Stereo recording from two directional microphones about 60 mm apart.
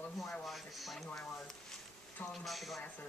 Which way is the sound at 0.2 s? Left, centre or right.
Centre.